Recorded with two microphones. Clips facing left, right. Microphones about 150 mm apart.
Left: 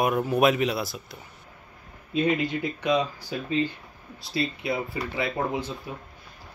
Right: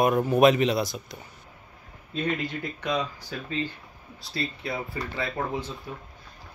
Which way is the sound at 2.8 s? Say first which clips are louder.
Left 4 dB; 20° left (ahead or behind).